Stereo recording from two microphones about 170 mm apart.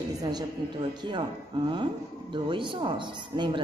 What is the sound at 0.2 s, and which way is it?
A man's voice, 25° right (ahead or behind).